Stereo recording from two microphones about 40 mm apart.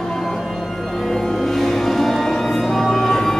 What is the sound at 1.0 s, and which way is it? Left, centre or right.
Music, centre.